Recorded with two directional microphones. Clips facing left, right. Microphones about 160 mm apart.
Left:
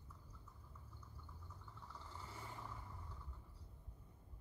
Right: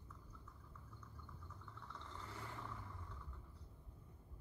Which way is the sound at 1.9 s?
5° left (ahead or behind).